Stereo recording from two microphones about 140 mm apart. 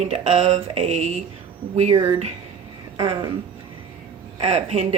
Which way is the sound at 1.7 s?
40° right (ahead or behind).